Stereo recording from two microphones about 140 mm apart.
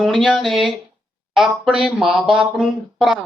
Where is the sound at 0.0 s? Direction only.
Centre (ahead or behind).